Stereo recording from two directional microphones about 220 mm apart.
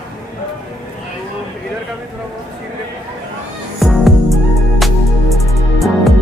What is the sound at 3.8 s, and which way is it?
Music, centre (ahead or behind).